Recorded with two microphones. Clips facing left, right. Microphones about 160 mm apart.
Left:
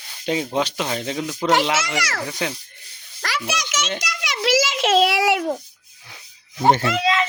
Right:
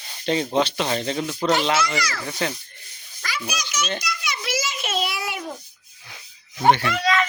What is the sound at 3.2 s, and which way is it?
Speech, 80° left.